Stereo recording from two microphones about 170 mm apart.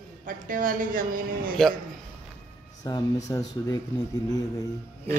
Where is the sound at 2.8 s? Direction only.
20° left (ahead or behind).